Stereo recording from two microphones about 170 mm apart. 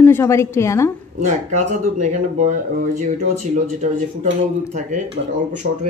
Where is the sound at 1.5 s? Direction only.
45° right (ahead or behind).